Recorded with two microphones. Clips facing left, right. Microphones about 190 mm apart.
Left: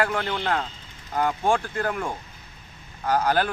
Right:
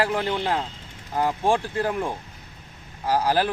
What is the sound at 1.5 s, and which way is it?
Speech, 30° right (ahead or behind).